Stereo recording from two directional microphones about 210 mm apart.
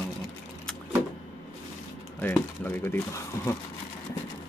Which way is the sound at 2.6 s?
10° left (ahead or behind).